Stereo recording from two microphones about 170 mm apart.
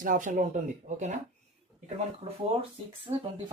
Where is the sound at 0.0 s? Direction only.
50° right (ahead or behind).